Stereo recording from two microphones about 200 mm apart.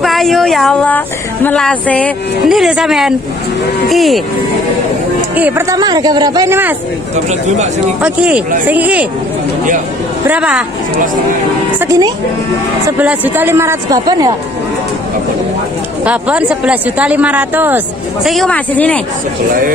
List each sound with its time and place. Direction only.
0.0 s speech: centre (ahead or behind)
5.3 s speech: 10° right (ahead or behind)
7.2 s speech: 35° right (ahead or behind)
8.0 s speech: 5° right (ahead or behind)
10.2 s speech: 5° right (ahead or behind)
11.8 s speech: 15° right (ahead or behind)
16.0 s speech: 5° right (ahead or behind)